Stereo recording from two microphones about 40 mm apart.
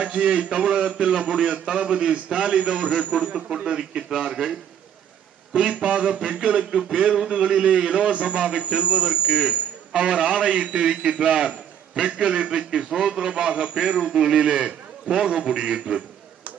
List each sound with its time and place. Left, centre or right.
0.2 s a man's voice: right
3.5 s a man's voice: right
5.5 s a man's voice: right
6.8 s a man's voice: centre